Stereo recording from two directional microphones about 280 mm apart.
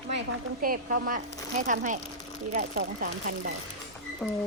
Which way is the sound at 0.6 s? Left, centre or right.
Right.